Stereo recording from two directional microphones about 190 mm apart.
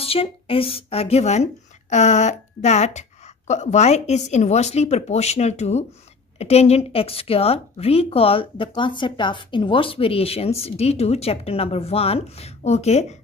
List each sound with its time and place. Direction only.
0.0 s speech: 30° left (ahead or behind)